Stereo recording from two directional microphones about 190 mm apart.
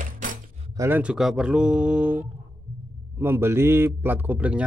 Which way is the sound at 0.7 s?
10° right (ahead or behind).